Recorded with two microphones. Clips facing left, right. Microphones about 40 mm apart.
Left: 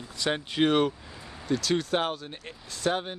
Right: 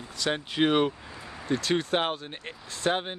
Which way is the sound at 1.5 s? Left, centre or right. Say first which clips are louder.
Even; right.